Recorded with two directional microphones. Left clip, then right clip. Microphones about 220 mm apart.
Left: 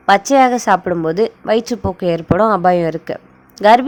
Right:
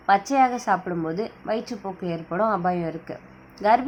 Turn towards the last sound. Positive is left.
turn(degrees=40)  # may be behind; listen again after turning